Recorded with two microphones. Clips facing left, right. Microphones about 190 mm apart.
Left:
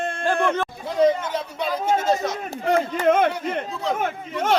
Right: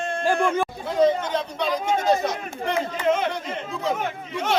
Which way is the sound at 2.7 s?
50° left (ahead or behind).